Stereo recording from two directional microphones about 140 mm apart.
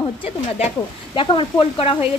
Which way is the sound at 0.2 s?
45° left (ahead or behind).